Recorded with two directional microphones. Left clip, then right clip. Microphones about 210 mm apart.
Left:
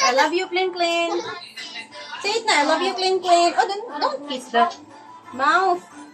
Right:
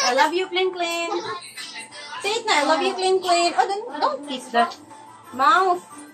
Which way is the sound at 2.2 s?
5° right (ahead or behind).